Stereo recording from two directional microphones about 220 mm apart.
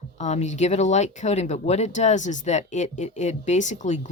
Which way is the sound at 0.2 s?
30° left (ahead or behind).